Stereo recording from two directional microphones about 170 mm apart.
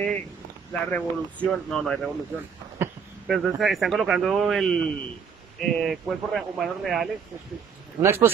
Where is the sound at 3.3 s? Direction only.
Centre (ahead or behind).